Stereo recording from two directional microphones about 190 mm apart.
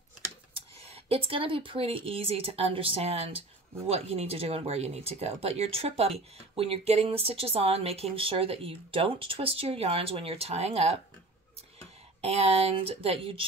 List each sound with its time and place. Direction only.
0.6 s speech: 30° right (ahead or behind)
12.2 s speech: 35° right (ahead or behind)